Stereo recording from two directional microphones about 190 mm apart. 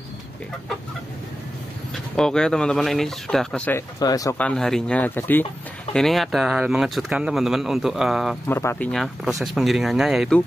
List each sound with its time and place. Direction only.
2.1 s speech: 5° left (ahead or behind)
4.0 s speech: 20° left (ahead or behind)
4.4 s speech: 5° left (ahead or behind)
8.5 s speech: 10° left (ahead or behind)